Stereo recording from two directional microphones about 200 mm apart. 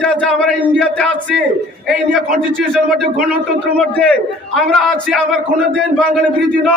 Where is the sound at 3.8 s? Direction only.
5° left (ahead or behind).